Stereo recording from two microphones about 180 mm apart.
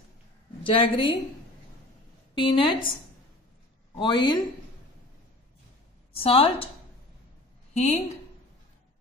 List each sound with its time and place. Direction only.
0.7 s a woman's voice: 30° left (ahead or behind)
2.3 s a woman's voice: 30° left (ahead or behind)
3.9 s a woman's voice: 25° left (ahead or behind)
6.1 s a woman's voice: 30° left (ahead or behind)
7.7 s a woman's voice: 40° left (ahead or behind)